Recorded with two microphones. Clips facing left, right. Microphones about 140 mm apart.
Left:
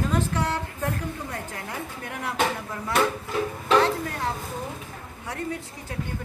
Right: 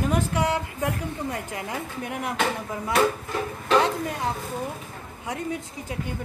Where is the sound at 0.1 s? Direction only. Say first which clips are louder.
Right 2 dB; 15° right (ahead or behind).